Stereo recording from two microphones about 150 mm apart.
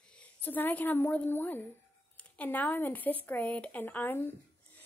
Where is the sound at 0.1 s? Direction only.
10° left (ahead or behind).